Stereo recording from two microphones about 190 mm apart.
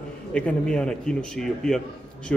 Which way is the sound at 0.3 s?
5° left (ahead or behind).